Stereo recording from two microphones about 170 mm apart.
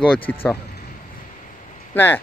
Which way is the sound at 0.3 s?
15° left (ahead or behind).